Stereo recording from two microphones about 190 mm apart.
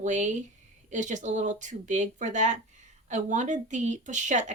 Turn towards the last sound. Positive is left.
turn(degrees=-40)  # may be behind; listen again after turning